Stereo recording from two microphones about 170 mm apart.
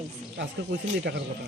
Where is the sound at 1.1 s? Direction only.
75° right (ahead or behind).